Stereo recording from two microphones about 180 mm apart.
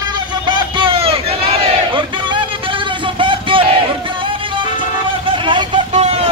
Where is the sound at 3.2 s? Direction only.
30° right (ahead or behind).